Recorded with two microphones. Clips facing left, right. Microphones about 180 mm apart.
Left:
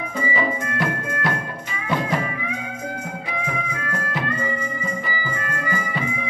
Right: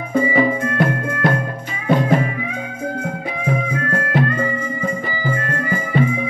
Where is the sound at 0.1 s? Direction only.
55° right (ahead or behind).